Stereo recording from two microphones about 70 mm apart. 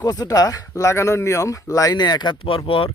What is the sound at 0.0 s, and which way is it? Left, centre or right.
Speech, left.